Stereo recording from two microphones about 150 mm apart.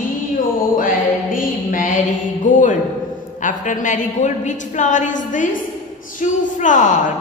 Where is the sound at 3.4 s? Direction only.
60° left (ahead or behind).